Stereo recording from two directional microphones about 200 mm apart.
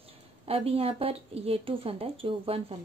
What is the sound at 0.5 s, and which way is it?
Speech, 30° right (ahead or behind).